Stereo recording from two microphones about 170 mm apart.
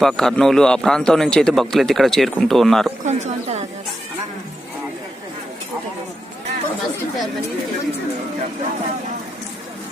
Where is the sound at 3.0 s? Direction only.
40° right (ahead or behind).